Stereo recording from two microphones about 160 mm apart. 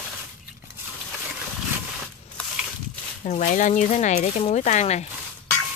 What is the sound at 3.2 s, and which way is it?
Speech, 50° left (ahead or behind).